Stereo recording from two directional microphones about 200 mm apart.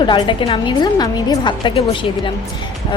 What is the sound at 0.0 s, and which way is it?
A woman's voice, 25° left (ahead or behind).